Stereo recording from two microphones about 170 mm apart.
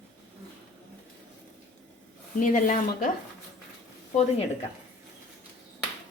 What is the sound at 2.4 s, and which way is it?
Speech, 50° left (ahead or behind).